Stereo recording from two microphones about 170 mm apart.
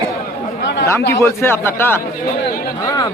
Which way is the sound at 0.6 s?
90° left.